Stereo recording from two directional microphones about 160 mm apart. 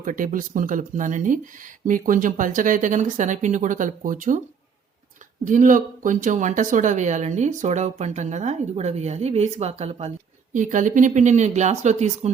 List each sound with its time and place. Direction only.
0.0 s speech: 55° right (ahead or behind)
5.5 s speech: 55° right (ahead or behind)
10.5 s speech: 50° right (ahead or behind)